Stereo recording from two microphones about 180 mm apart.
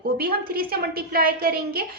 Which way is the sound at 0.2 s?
55° right (ahead or behind).